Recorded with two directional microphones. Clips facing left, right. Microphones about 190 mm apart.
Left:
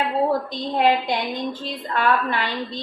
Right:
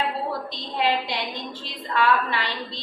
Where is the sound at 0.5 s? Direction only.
50° left (ahead or behind).